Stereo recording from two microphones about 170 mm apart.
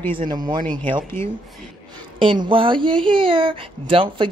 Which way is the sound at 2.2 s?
30° right (ahead or behind).